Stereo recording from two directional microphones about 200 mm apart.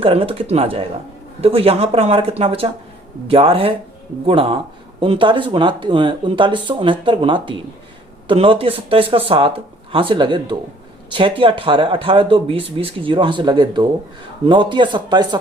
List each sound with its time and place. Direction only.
0.0 s speech: 30° right (ahead or behind)